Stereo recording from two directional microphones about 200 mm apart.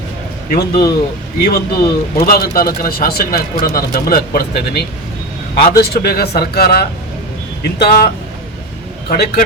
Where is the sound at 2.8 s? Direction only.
45° left (ahead or behind).